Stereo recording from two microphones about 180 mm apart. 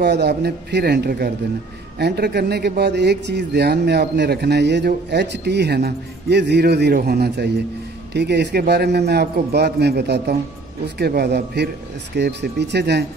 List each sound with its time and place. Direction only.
0.0 s a man's voice: 65° right (ahead or behind)